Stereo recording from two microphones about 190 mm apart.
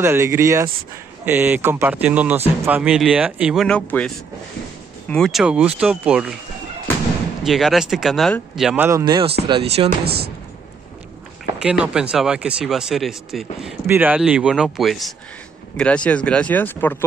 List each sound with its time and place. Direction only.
0.0 s speech: 15° right (ahead or behind); by 4.1 s 5° left (ahead or behind)
5.1 s speech: centre (ahead or behind)
7.4 s speech: centre (ahead or behind)
9.0 s speech: 25° right (ahead or behind)
10.0 s speech: 55° right (ahead or behind)
11.6 s speech: 5° right (ahead or behind)